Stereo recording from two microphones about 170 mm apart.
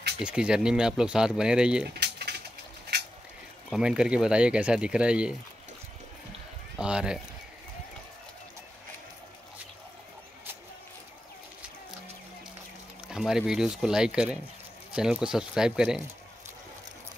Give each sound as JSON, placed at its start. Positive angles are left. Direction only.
{"t": 0.2, "sound": "speech", "side_deg": -5}
{"t": 2.0, "sound": "mechanisms", "side_deg": -75}
{"t": 3.7, "sound": "speech", "side_deg": -5}
{"t": 6.8, "sound": "speech", "side_deg": -5}
{"t": 13.1, "sound": "speech", "side_deg": -5}